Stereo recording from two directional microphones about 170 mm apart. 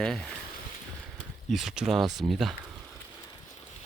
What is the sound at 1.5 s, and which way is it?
Speech, centre (ahead or behind).